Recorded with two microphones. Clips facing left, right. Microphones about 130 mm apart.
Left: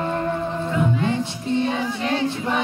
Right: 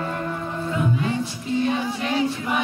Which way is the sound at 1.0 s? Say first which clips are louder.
Left 2 dB; 30° left (ahead or behind).